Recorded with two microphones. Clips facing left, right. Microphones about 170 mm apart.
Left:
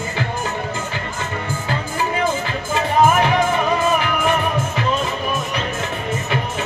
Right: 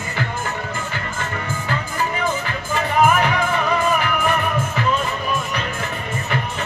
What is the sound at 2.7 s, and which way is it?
Music, 20° left (ahead or behind).